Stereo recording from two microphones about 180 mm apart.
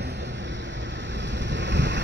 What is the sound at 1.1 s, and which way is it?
Boat, 80° right.